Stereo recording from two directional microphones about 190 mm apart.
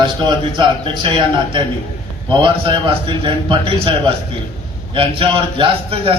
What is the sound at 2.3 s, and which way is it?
A man's voice, 25° right (ahead or behind).